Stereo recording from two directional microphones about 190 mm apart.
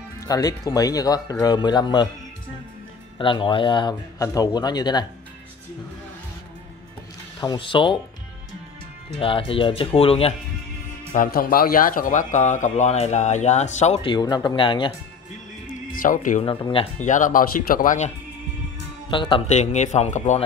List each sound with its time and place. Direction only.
0.2 s speech: 20° left (ahead or behind)
3.2 s speech: 25° left (ahead or behind)
7.3 s speech: 25° left (ahead or behind)
9.1 s speech: 30° left (ahead or behind)
11.1 s speech: 50° left (ahead or behind); by 14.9 s 25° left (ahead or behind)
15.9 s speech: 45° left (ahead or behind)
16.4 s speech: 30° left (ahead or behind)
19.0 s speech: 25° left (ahead or behind)